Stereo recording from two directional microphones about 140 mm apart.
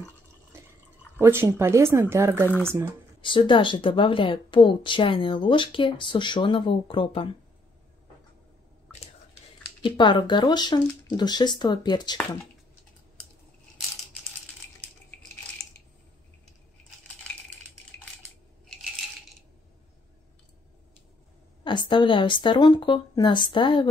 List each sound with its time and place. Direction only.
1.2 s speech: 15° right (ahead or behind)
3.2 s speech: 35° left (ahead or behind)
9.8 s speech: 35° left (ahead or behind)
18.7 s coin: centre (ahead or behind)
21.6 s speech: 35° left (ahead or behind)